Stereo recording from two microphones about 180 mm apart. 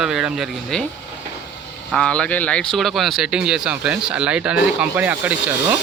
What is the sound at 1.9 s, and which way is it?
A man's voice, 5° left (ahead or behind).